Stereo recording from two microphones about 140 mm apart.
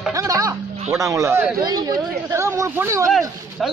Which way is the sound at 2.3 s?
20° right (ahead or behind).